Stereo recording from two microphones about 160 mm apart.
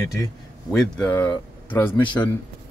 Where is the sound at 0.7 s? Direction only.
5° left (ahead or behind).